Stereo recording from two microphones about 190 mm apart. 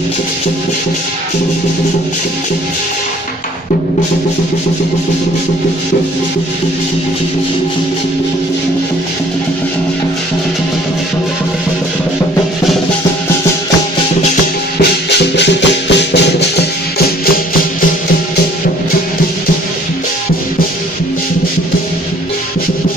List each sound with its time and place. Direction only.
15.0 s music: 65° left (ahead or behind)